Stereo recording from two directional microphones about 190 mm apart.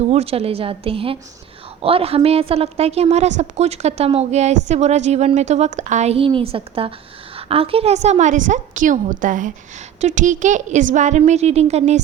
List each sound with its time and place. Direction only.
0.1 s a woman's voice: 30° right (ahead or behind)